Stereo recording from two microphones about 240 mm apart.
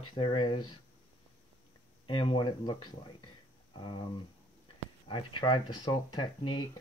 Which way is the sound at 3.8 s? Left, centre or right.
Centre.